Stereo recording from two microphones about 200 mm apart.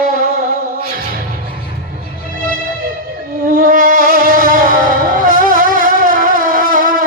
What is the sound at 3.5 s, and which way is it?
Music, 40° right (ahead or behind).